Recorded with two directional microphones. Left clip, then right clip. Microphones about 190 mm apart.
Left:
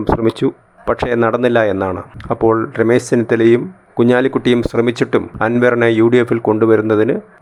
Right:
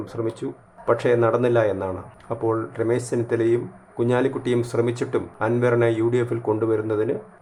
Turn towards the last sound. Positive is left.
turn(degrees=35)  # may be behind; listen again after turning